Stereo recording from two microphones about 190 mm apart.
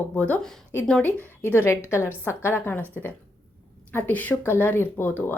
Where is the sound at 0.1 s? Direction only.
5° left (ahead or behind).